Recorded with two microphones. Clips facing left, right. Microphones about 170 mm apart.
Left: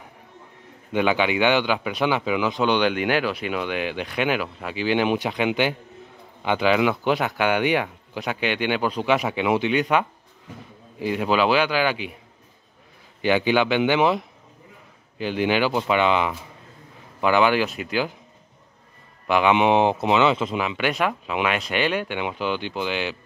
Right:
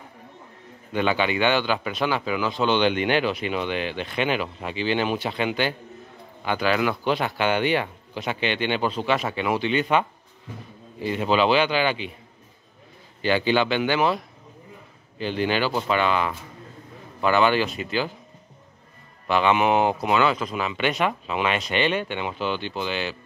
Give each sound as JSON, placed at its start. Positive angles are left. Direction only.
{"t": 0.9, "sound": "speech", "side_deg": 15}
{"t": 13.2, "sound": "speech", "side_deg": 15}
{"t": 19.2, "sound": "speech", "side_deg": 15}
{"t": 20.5, "sound": "speech", "side_deg": 10}